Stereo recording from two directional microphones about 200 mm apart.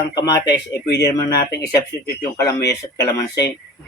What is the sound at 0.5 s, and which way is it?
Speech, 60° left (ahead or behind).